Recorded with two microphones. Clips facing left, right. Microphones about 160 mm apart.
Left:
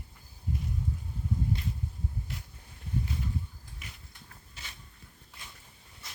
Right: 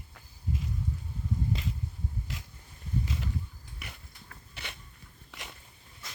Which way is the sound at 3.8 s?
65° right (ahead or behind).